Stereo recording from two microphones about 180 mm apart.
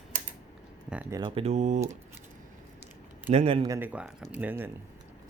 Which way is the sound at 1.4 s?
40° right (ahead or behind).